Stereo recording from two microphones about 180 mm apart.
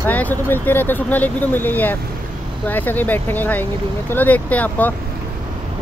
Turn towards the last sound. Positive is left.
turn(degrees=10)  # may be behind; listen again after turning